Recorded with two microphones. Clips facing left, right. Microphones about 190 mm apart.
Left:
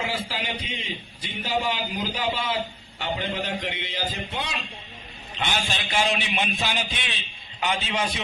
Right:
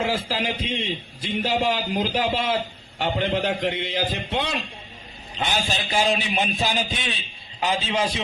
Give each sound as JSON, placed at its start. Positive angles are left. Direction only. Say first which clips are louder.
{"t": 0.0, "sound": "a man's voice", "louder": "right 5 dB", "side_deg": -45}
{"t": 4.1, "sound": "a man's voice", "louder": "right 5 dB", "side_deg": -65}
{"t": 5.4, "sound": "a man's voice", "louder": "right 3 dB", "side_deg": -40}